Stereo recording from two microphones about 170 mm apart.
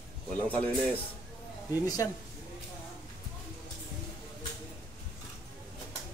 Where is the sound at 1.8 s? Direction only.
20° left (ahead or behind).